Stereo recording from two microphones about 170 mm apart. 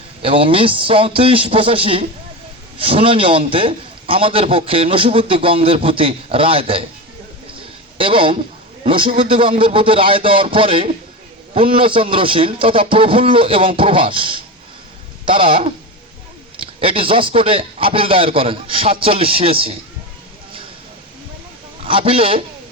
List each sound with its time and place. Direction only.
0.2 s a man's voice: 30° right (ahead or behind)
7.9 s a man's voice: 30° right (ahead or behind)
21.8 s a man's voice: 30° right (ahead or behind)